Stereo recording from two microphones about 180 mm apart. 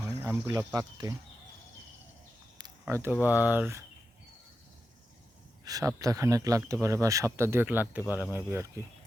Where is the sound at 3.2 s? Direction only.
10° right (ahead or behind).